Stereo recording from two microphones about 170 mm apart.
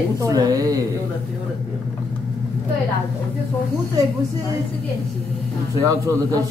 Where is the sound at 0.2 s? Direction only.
20° right (ahead or behind).